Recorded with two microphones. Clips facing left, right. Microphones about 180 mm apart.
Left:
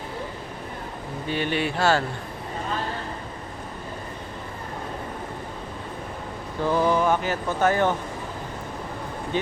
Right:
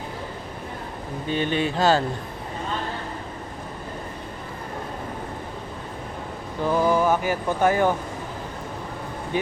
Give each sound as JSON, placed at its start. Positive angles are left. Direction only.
{"t": 1.3, "sound": "speech", "side_deg": -20}
{"t": 6.7, "sound": "speech", "side_deg": -10}
{"t": 9.3, "sound": "speech", "side_deg": -10}